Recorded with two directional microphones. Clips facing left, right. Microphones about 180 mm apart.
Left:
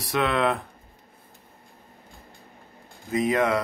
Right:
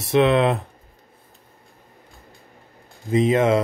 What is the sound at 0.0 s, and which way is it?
Speech, 25° right (ahead or behind).